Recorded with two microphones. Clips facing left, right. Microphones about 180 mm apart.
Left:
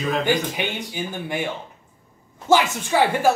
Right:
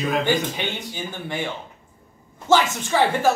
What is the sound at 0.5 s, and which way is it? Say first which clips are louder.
Speech: left 2 dB; 10° left (ahead or behind).